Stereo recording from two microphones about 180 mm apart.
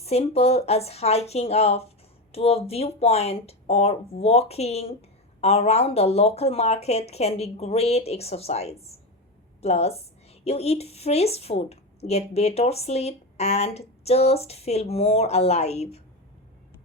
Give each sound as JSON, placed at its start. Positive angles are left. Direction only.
{"t": 0.0, "sound": "a woman's voice", "side_deg": 35}